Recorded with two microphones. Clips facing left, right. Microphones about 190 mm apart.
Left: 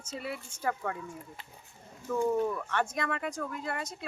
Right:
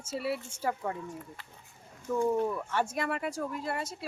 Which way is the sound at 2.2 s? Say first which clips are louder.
Even; centre (ahead or behind).